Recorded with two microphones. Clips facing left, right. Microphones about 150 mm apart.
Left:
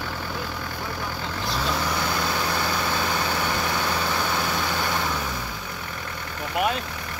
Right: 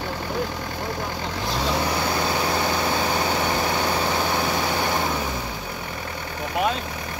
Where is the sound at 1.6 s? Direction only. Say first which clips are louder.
Right 3 dB; 25° right (ahead or behind).